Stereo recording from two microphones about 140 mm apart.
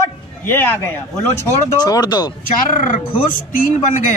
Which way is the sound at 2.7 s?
70° left (ahead or behind).